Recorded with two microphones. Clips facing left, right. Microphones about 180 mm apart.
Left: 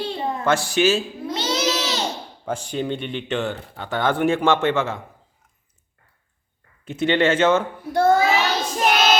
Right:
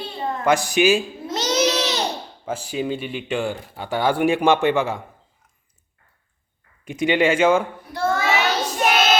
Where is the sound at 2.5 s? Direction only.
5° right (ahead or behind).